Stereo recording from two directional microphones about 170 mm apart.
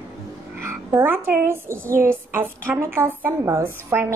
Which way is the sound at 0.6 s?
15° right (ahead or behind).